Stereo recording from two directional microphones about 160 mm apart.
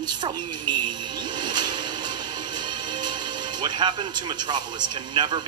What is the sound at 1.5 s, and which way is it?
Music, 25° right (ahead or behind).